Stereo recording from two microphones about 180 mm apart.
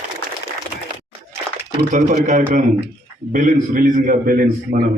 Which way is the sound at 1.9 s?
45° right (ahead or behind).